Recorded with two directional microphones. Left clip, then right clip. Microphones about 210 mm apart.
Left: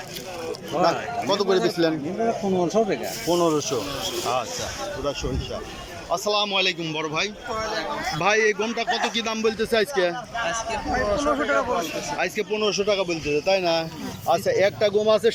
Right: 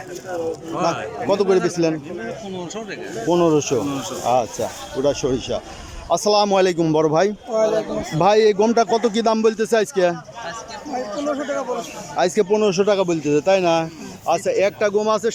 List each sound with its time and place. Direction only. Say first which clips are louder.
0.9 s speech: right 4 dB; 15° right (ahead or behind)
2.7 s speech: left 9 dB; 25° left (ahead or behind)
3.2 s speech: right 5 dB; 10° right (ahead or behind)
5.0 s a man's voice: right 12 dB; 20° right (ahead or behind)
8.2 s a man's voice: right 7 dB; 20° right (ahead or behind)
12.1 s speech: right 9 dB; 20° right (ahead or behind)